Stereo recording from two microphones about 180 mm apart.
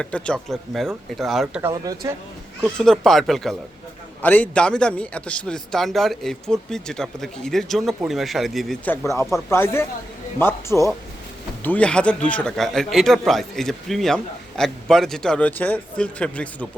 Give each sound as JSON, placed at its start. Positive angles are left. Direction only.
{"t": 0.0, "sound": "speech", "side_deg": 5}
{"t": 1.6, "sound": "speech", "side_deg": -20}
{"t": 2.7, "sound": "a man's voice", "side_deg": 5}